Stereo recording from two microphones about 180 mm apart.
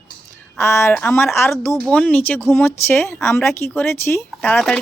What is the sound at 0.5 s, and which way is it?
Speech, 15° left (ahead or behind).